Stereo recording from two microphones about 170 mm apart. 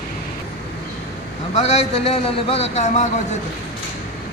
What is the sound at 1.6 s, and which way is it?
A man's voice, 40° left (ahead or behind).